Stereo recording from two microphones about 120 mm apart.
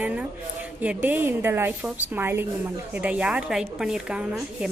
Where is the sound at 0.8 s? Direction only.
15° right (ahead or behind).